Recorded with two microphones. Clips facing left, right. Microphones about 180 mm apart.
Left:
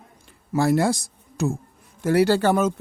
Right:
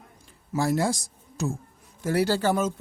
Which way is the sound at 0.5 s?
65° left (ahead or behind).